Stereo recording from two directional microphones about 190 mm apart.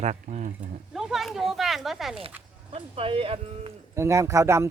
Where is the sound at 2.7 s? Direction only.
30° right (ahead or behind).